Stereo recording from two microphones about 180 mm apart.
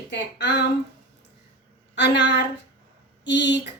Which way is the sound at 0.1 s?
75° left (ahead or behind).